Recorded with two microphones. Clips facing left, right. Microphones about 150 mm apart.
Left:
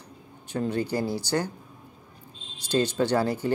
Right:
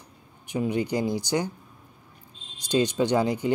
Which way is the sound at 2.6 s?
15° right (ahead or behind).